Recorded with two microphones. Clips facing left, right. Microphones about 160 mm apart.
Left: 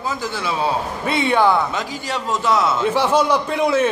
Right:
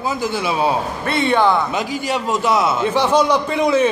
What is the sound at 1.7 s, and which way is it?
A man's voice, 15° right (ahead or behind).